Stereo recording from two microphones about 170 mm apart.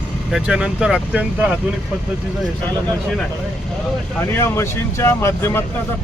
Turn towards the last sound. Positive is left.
turn(degrees=15)  # may be behind; listen again after turning